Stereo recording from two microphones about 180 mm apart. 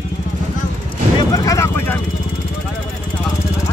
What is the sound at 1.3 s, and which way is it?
Vehicle, 20° left (ahead or behind).